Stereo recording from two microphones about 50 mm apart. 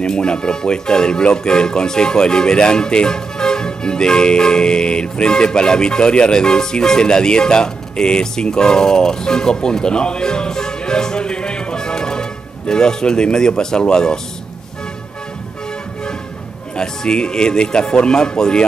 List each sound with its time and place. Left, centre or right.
0.0 s speech: centre
16.7 s speech: centre